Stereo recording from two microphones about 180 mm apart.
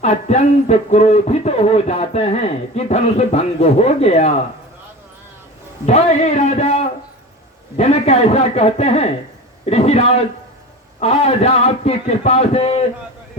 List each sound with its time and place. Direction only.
0.0 s speech: 40° left (ahead or behind)
5.8 s speech: 40° left (ahead or behind)